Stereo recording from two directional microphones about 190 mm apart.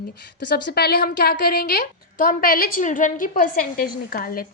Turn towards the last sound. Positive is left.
turn(degrees=50)  # may be behind; listen again after turning